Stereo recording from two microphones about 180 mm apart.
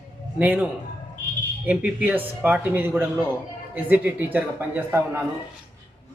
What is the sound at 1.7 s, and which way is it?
Speech, 10° right (ahead or behind).